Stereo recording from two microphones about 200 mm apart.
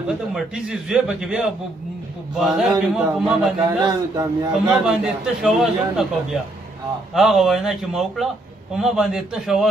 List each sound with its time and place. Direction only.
0.3 s a man's voice: 5° right (ahead or behind)
3.5 s a man's voice: 20° right (ahead or behind)
4.5 s a man's voice: 5° right (ahead or behind)